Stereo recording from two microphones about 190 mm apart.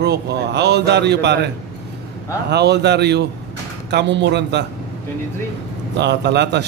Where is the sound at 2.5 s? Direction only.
60° right (ahead or behind).